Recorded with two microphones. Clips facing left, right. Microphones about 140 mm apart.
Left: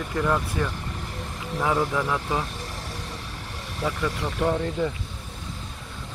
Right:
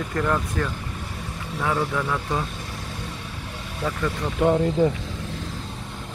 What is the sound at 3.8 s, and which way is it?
Speech, 5° left (ahead or behind).